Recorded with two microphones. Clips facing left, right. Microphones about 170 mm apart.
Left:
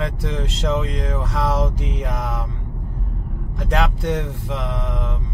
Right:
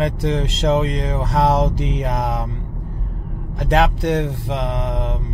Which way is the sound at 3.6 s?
75° right (ahead or behind).